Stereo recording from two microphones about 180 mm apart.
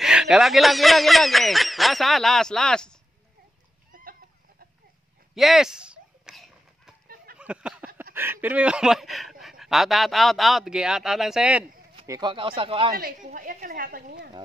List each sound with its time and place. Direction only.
0.0 s speech: 5° right (ahead or behind)
3.9 s chicken: 55° right (ahead or behind)
5.3 s a sound: centre (ahead or behind)
7.3 s speech: 5° right (ahead or behind)
12.1 s speech: 25° right (ahead or behind)
12.9 s a woman's voice: 50° right (ahead or behind)